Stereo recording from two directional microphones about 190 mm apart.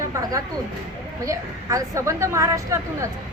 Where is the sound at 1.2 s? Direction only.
15° right (ahead or behind).